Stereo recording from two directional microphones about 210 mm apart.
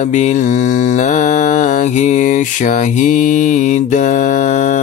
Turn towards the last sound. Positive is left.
turn(degrees=35)  # may be behind; listen again after turning